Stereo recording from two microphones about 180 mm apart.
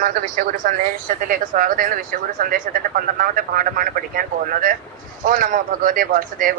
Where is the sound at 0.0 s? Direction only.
50° right (ahead or behind).